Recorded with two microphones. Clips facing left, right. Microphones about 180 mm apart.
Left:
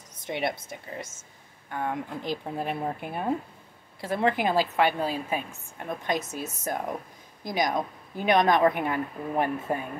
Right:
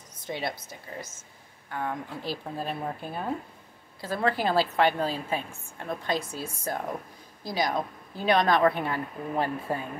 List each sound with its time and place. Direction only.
0.2 s a woman's voice: 25° left (ahead or behind)